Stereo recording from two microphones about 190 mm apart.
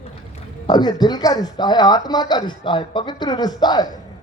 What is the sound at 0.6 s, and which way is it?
Speech, 20° left (ahead or behind).